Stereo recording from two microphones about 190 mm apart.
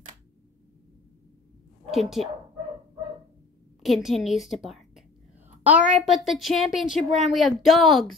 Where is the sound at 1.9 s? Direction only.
Centre (ahead or behind).